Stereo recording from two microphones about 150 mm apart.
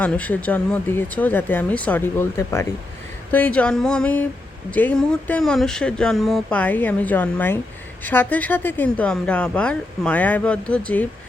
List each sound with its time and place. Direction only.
0.0 s speech: 10° left (ahead or behind)